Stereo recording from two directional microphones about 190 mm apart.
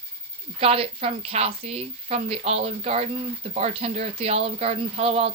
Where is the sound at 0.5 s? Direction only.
30° right (ahead or behind).